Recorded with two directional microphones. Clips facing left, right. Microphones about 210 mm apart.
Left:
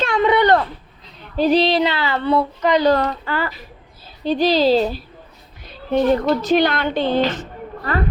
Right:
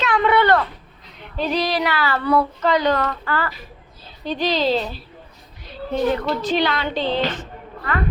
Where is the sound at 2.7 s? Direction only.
35° left (ahead or behind).